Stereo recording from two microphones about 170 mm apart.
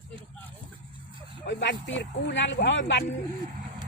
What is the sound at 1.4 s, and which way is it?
Speech, 90° left.